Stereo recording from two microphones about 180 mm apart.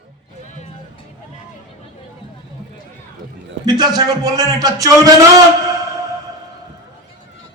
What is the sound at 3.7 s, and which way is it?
A man's voice, 25° right (ahead or behind).